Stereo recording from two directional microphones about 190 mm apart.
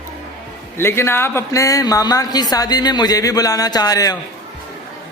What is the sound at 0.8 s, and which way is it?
Speech, 15° left (ahead or behind).